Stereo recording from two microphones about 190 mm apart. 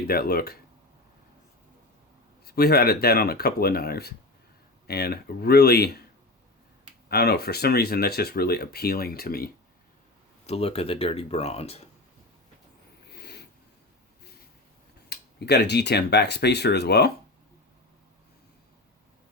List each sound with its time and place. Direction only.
0.1 s speech: 50° left (ahead or behind)
2.4 s speech: 55° left (ahead or behind)
7.1 s speech: 55° left (ahead or behind)
10.4 s speech: 30° left (ahead or behind)
13.1 s a sound: 60° left (ahead or behind)
15.1 s speech: 60° left (ahead or behind)